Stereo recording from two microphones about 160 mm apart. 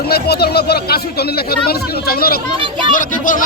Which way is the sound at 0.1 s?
80° left.